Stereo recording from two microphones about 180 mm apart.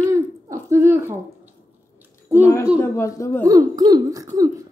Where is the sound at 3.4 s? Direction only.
20° right (ahead or behind).